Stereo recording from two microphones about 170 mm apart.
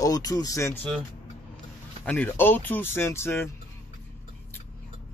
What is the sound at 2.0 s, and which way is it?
Speech, 10° left (ahead or behind).